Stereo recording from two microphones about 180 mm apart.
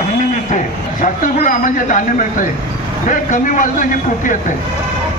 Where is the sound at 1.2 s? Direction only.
50° left (ahead or behind).